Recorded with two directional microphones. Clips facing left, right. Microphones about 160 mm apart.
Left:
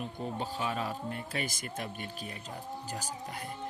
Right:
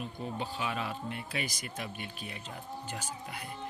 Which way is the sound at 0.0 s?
40° left (ahead or behind).